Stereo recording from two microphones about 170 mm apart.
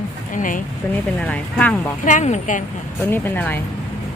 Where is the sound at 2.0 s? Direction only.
45° left (ahead or behind).